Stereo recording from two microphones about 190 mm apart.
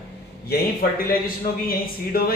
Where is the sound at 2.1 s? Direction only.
50° left (ahead or behind).